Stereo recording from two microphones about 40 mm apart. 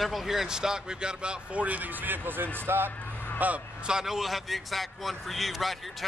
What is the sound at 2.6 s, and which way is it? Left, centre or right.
Speech, right.